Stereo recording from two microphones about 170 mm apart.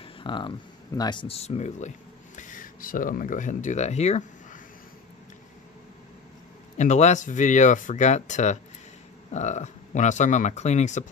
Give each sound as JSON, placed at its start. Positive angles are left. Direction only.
{"t": 0.0, "sound": "speech", "side_deg": 30}
{"t": 6.8, "sound": "speech", "side_deg": 45}